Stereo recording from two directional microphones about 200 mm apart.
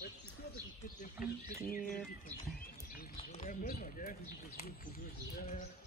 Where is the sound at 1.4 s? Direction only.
45° left (ahead or behind).